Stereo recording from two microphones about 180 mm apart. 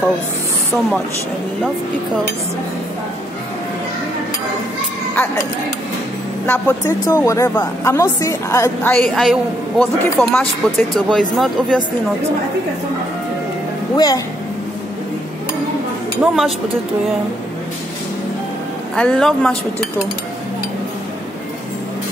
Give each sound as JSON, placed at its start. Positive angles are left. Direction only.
{"t": 6.4, "sound": "a woman's voice", "side_deg": 10}
{"t": 8.9, "sound": "a man's voice", "side_deg": 0}
{"t": 13.9, "sound": "speech", "side_deg": 20}
{"t": 16.2, "sound": "a man's voice", "side_deg": 0}
{"t": 18.9, "sound": "a man's voice", "side_deg": 5}